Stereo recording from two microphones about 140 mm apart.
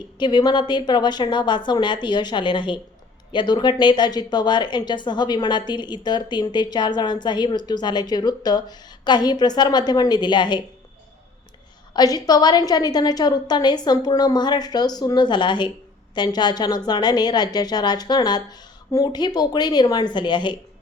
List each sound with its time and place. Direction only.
0.2 s a woman's voice: 30° left (ahead or behind)
11.9 s a woman's voice: 25° left (ahead or behind)